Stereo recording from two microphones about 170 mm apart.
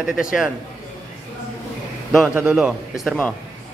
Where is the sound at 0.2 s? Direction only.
5° right (ahead or behind).